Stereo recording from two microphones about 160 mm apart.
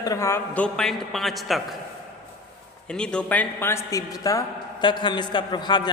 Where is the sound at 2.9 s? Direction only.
5° left (ahead or behind); by 5.9 s 25° left (ahead or behind).